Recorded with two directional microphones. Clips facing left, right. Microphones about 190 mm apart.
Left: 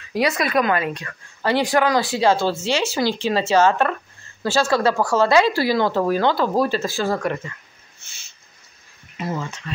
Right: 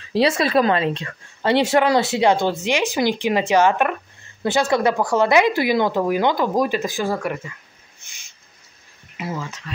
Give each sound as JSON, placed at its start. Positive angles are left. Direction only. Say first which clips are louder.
{"t": 0.1, "sound": "a woman's voice", "louder": "right 3 dB", "side_deg": -30}
{"t": 8.0, "sound": "owl", "louder": "even", "side_deg": -15}
{"t": 9.1, "sound": "speech", "louder": "left 2 dB", "side_deg": -5}